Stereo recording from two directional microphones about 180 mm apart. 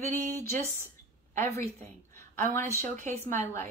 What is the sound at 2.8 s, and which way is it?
Music, 45° right (ahead or behind).